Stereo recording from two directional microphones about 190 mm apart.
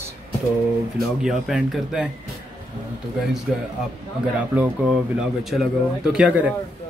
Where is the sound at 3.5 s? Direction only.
Centre (ahead or behind).